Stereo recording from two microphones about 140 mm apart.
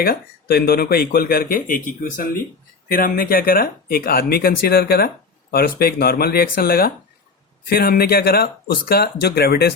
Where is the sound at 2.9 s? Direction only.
90° left.